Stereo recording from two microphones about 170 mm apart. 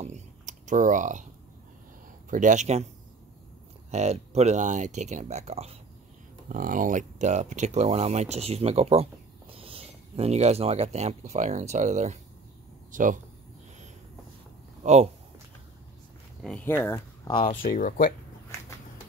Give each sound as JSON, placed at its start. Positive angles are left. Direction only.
{"t": 0.0, "sound": "computer keyboard", "side_deg": -45}
{"t": 2.2, "sound": "speech", "side_deg": -50}
{"t": 3.9, "sound": "speech", "side_deg": -40}
{"t": 6.5, "sound": "speech", "side_deg": -55}
{"t": 14.8, "sound": "speech", "side_deg": -40}
{"t": 16.4, "sound": "speech", "side_deg": 10}
{"t": 17.5, "sound": "speech", "side_deg": 55}